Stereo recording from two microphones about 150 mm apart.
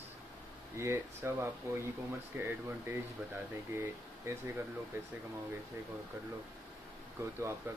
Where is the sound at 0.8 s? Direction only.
15° right (ahead or behind).